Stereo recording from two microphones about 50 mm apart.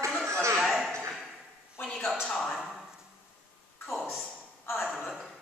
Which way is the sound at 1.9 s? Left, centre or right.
Centre.